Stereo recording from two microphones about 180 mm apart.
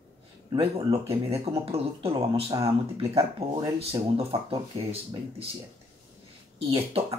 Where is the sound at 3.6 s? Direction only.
30° right (ahead or behind).